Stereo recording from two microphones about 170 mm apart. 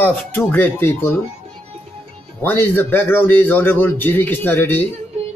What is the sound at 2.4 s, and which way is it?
A man's voice, 10° left (ahead or behind).